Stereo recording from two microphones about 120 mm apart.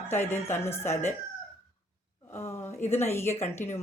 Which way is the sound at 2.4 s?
20° left (ahead or behind).